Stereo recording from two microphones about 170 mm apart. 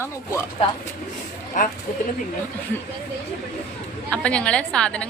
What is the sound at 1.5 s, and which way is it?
Speech, 50° left (ahead or behind).